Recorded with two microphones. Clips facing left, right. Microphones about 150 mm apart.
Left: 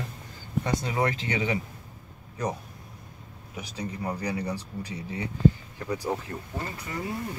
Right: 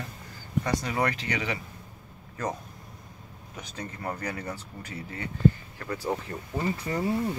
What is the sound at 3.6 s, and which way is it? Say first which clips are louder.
Speech: left 4 dB; 10° left (ahead or behind).